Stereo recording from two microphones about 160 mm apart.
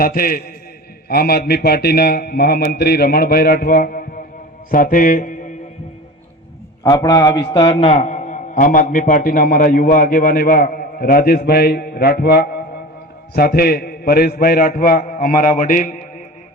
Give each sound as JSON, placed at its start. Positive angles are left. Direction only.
{"t": 0.0, "sound": "a man's voice", "side_deg": 65}
{"t": 4.7, "sound": "mantra", "side_deg": 60}
{"t": 6.8, "sound": "a man's voice", "side_deg": 25}